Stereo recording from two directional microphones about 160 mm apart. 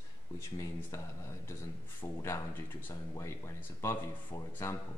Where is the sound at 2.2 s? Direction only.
15° left (ahead or behind).